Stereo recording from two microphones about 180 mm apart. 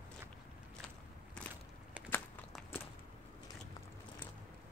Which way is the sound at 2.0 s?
5° right (ahead or behind).